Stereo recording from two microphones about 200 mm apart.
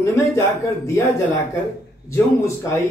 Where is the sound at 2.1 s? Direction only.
15° left (ahead or behind).